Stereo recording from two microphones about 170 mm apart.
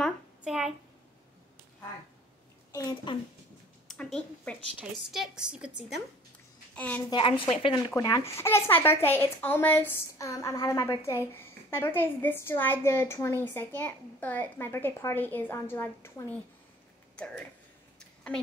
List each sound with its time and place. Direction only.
0.4 s a child's voice: centre (ahead or behind)
2.7 s a woman's voice: 20° left (ahead or behind)
3.8 s a woman's voice: 5° left (ahead or behind)
6.7 s a sound: 10° left (ahead or behind)
7.1 s a woman's voice: 30° left (ahead or behind)
7.9 s a woman's voice: 20° left (ahead or behind)
17.9 s a sound: 5° left (ahead or behind)